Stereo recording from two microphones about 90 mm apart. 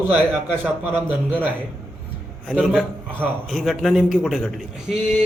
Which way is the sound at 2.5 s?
5° right (ahead or behind).